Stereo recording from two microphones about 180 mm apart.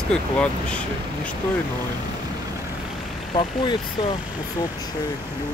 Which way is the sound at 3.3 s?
25° left (ahead or behind).